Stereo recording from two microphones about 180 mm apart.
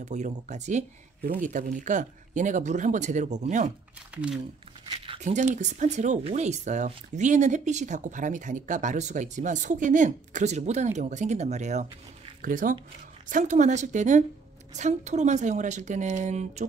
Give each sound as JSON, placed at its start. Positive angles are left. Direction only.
{"t": 0.0, "sound": "speech", "side_deg": -40}
{"t": 4.1, "sound": "speech", "side_deg": -5}
{"t": 4.9, "sound": "speech", "side_deg": -35}